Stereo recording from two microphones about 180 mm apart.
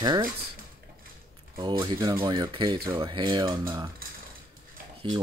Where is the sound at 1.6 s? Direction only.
25° right (ahead or behind).